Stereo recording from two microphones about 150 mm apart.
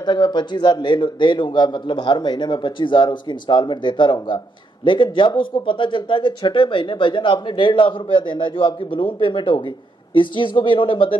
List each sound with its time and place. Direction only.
0.0 s a man's voice: 30° left (ahead or behind)